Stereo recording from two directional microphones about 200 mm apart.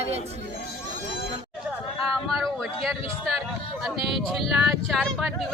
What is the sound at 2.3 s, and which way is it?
Speech, centre (ahead or behind).